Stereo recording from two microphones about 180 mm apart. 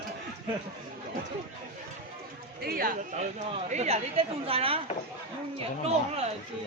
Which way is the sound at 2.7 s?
55° right (ahead or behind).